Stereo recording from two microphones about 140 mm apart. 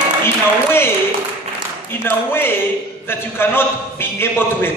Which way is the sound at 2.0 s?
15° left (ahead or behind).